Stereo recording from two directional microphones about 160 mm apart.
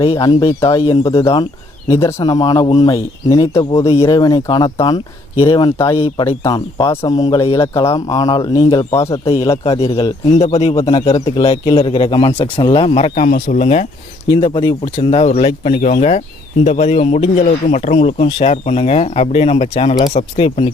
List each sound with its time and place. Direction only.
0.0 s speech: 30° left (ahead or behind)
9.1 s speech: 35° left (ahead or behind)
13.1 s speech: 50° left (ahead or behind)
14.4 s speech: 30° left (ahead or behind)